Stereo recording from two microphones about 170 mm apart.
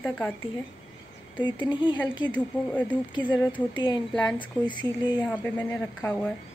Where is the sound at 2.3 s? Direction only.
10° left (ahead or behind).